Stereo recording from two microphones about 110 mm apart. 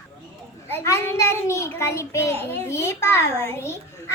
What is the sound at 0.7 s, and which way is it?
A child's voice, 25° left (ahead or behind).